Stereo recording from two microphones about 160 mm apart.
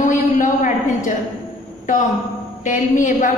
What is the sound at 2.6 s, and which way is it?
Speech, 50° left (ahead or behind).